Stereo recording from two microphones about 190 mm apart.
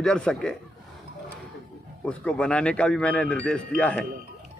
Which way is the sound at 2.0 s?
5° left (ahead or behind).